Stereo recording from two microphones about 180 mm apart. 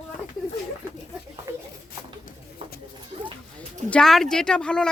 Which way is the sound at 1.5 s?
15° right (ahead or behind).